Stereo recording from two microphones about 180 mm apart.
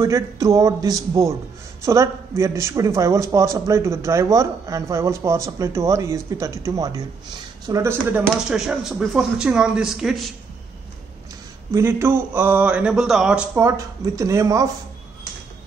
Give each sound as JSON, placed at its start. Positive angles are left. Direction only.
{"t": 0.0, "sound": "a man's voice", "side_deg": -20}
{"t": 8.5, "sound": "speech", "side_deg": -5}
{"t": 11.7, "sound": "speech", "side_deg": -15}
{"t": 13.6, "sound": "speech", "side_deg": -20}